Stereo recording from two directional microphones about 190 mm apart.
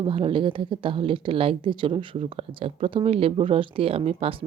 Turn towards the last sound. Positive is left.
turn(degrees=-30)  # may be behind; listen again after turning